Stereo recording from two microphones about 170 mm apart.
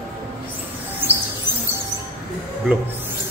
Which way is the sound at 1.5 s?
25° left (ahead or behind).